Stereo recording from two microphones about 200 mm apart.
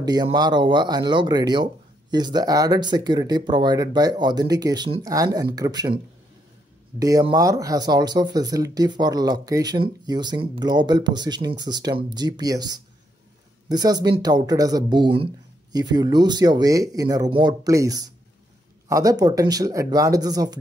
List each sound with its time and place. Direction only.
0.0 s speech: 20° right (ahead or behind)
7.0 s speech: 15° right (ahead or behind)